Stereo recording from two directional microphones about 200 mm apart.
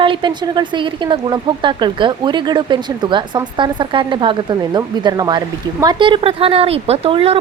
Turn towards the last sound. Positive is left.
turn(degrees=-30)  # may be behind; listen again after turning